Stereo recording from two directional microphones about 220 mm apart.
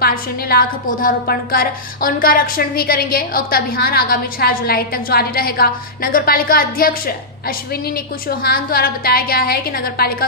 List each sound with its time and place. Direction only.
0.0 s a woman's voice: 45° left (ahead or behind)